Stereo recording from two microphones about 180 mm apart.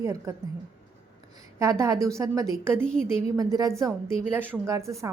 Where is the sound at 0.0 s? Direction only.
15° right (ahead or behind).